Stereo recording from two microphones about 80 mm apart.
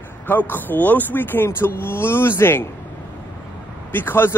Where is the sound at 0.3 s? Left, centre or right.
Left.